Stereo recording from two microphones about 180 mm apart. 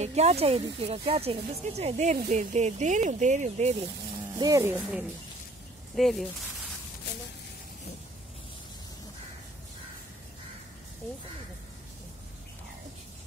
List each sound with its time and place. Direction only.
0.0 s speech: 40° right (ahead or behind)
4.4 s speech: 15° right (ahead or behind)
5.9 s speech: centre (ahead or behind)